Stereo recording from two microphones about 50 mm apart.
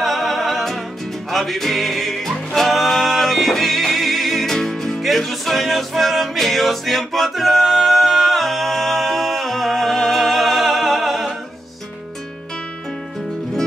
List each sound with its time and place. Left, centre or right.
0.0 s music: centre